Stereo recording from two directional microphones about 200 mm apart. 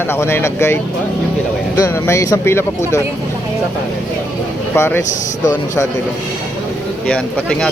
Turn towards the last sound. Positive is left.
turn(degrees=5)  # may be behind; listen again after turning